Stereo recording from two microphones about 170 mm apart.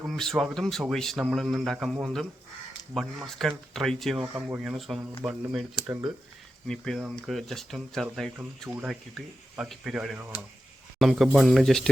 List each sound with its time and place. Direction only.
0.1 s speech: centre (ahead or behind)
5.8 s speech: 25° right (ahead or behind)
6.7 s speech: 5° left (ahead or behind)
8.7 s speech: 10° right (ahead or behind)